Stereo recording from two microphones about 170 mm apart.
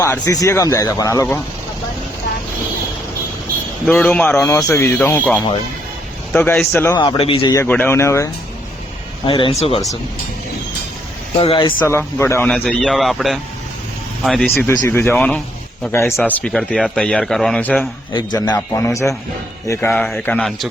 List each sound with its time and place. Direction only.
0.0 s speech: 20° left (ahead or behind)
3.8 s speech: 5° left (ahead or behind)
6.9 s speech: 25° left (ahead or behind)
7.5 s speech: 15° left (ahead or behind)
9.2 s speech: 30° left (ahead or behind)
11.3 s speech: 30° left (ahead or behind)
11.9 s a man's voice: 15° left (ahead or behind)
18.1 s speech: 25° left (ahead or behind)
19.9 s a man's voice: 5° left (ahead or behind)